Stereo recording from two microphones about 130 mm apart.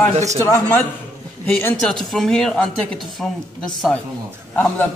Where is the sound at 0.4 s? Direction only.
20° left (ahead or behind); by 4.0 s 5° left (ahead or behind).